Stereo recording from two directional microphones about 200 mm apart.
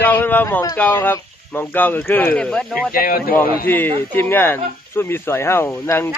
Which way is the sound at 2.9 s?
45° left (ahead or behind).